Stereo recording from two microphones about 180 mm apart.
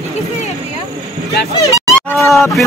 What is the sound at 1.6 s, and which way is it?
Music, 15° left (ahead or behind).